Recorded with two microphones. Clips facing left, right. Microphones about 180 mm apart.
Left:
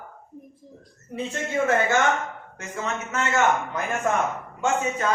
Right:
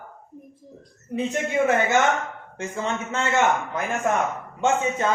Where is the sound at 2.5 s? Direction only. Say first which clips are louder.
Right 3 dB; 30° right (ahead or behind).